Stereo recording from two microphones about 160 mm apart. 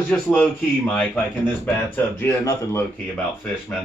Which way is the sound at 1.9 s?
15° left (ahead or behind).